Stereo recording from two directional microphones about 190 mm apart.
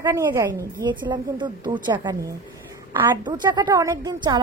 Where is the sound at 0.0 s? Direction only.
15° right (ahead or behind).